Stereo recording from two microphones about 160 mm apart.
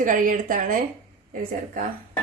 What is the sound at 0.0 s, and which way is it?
Speech, 55° right (ahead or behind).